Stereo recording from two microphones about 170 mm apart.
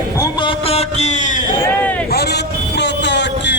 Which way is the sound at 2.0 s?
70° left (ahead or behind).